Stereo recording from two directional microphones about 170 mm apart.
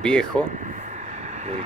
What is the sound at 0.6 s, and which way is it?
Vehicle, 45° right (ahead or behind).